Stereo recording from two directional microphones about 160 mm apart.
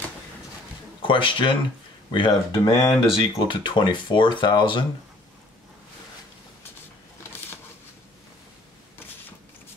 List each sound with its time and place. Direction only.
1.0 s speech: 30° left (ahead or behind)